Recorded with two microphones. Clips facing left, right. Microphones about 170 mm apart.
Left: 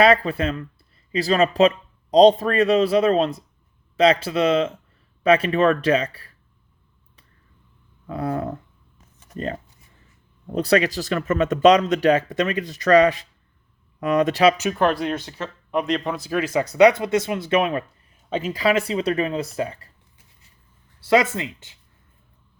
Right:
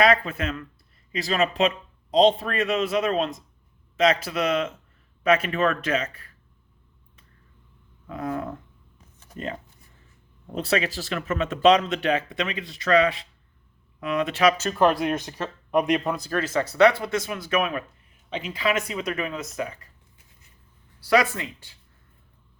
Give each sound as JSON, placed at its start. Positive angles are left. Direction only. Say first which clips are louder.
{"t": 0.0, "sound": "speech", "louder": "left 4 dB", "side_deg": 30}
{"t": 8.0, "sound": "speech", "louder": "left 4 dB", "side_deg": 35}
{"t": 10.5, "sound": "speech", "louder": "left 6 dB", "side_deg": 40}
{"t": 14.9, "sound": "speech", "louder": "even", "side_deg": -15}
{"t": 16.0, "sound": "speech", "louder": "left 2 dB", "side_deg": 5}
{"t": 18.3, "sound": "speech", "louder": "left 5 dB", "side_deg": 45}
{"t": 21.0, "sound": "speech", "louder": "left 3 dB", "side_deg": 25}